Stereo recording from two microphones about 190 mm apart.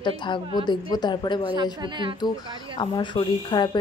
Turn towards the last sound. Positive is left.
turn(degrees=25)  # may be behind; listen again after turning